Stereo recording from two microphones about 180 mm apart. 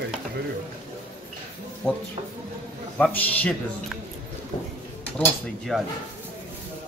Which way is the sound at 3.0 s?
10° left (ahead or behind).